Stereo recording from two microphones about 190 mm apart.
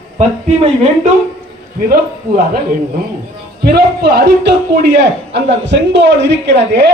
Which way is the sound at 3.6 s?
55° right (ahead or behind).